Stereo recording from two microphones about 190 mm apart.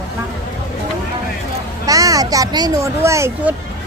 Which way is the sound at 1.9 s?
20° right (ahead or behind).